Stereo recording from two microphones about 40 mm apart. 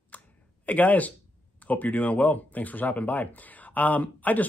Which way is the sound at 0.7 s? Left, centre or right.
Left.